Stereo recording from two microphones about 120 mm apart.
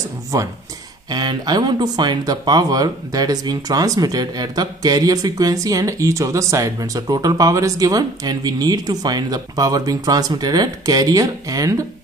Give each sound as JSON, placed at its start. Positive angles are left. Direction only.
{"t": 0.3, "sound": "speech", "side_deg": -30}